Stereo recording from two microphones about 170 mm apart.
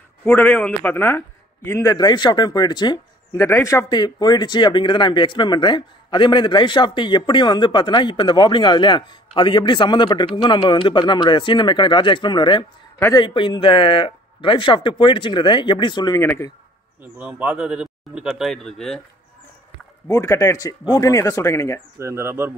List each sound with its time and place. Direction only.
0.2 s a man's voice: 10° left (ahead or behind); by 16.2 s 25° left (ahead or behind)
16.2 s speech: 15° left (ahead or behind)
17.0 s speech: 10° right (ahead or behind)
20.1 s a man's voice: 20° left (ahead or behind)
21.9 s speech: 15° right (ahead or behind)